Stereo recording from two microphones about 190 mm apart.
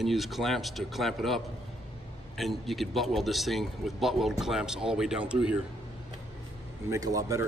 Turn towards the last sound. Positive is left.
turn(degrees=-15)  # may be behind; listen again after turning